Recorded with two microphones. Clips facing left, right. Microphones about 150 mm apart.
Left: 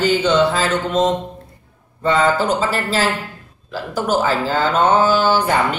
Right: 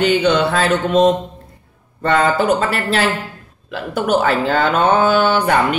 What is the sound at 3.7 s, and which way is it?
A man's voice, 65° right (ahead or behind).